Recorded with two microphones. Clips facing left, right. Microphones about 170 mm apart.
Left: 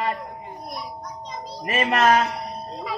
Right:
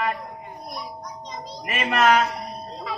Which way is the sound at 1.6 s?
40° left (ahead or behind).